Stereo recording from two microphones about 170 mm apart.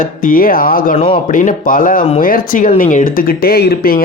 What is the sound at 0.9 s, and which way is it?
Speech, 30° left (ahead or behind).